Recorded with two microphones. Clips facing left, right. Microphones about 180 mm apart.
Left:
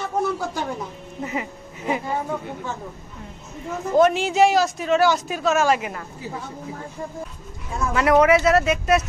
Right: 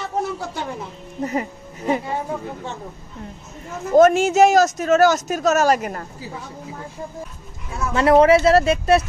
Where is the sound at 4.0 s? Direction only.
45° right (ahead or behind).